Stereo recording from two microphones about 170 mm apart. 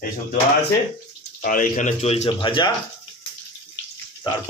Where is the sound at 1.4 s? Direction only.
55° left (ahead or behind); by 2.7 s 30° left (ahead or behind).